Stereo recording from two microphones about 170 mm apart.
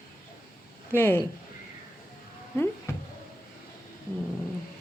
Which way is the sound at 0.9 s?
15° left (ahead or behind).